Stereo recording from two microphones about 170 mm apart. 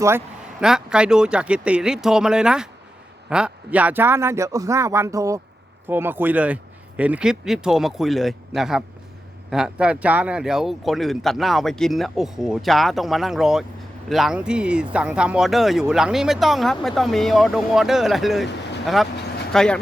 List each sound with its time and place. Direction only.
0.6 s speech: 5° right (ahead or behind)